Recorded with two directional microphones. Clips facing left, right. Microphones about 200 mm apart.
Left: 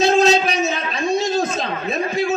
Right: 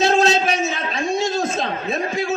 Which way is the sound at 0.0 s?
35° left (ahead or behind).